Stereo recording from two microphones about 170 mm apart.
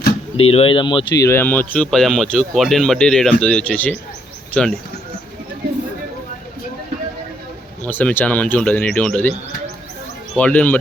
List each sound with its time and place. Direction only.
0.3 s speech: 35° left (ahead or behind); by 4.8 s 5° left (ahead or behind)
7.9 s speech: 10° left (ahead or behind)
10.3 s speech: 10° left (ahead or behind)